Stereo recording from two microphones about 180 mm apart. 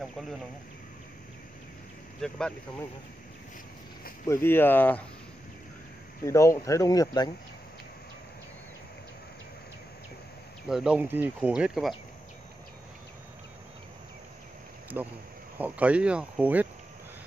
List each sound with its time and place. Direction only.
0.0 s a sound: centre (ahead or behind)
2.2 s speech: 5° left (ahead or behind)
4.3 s speech: 10° left (ahead or behind)
6.2 s speech: 15° left (ahead or behind)
10.7 s speech: 5° right (ahead or behind)
15.0 s speech: 10° right (ahead or behind)